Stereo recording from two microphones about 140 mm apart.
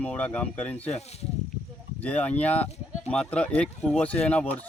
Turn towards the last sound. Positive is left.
turn(degrees=10)  # may be behind; listen again after turning